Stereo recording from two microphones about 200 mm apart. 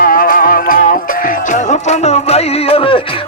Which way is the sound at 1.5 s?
35° left (ahead or behind).